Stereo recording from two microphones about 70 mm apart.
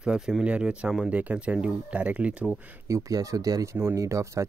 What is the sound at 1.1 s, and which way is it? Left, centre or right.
Speech, right.